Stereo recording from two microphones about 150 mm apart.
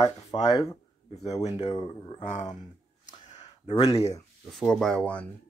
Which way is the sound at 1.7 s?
30° left (ahead or behind).